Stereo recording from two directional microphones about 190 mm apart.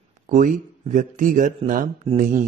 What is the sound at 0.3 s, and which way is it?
A man's voice, 45° right (ahead or behind).